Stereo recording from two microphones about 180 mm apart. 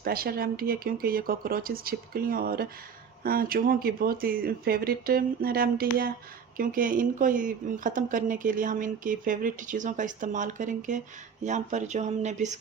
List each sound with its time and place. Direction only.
0.0 s speech: 55° right (ahead or behind); by 12.5 s 40° right (ahead or behind)